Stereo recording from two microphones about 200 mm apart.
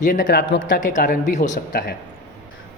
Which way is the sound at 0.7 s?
40° left (ahead or behind).